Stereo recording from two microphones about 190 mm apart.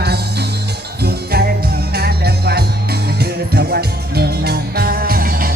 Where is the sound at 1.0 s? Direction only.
55° right (ahead or behind).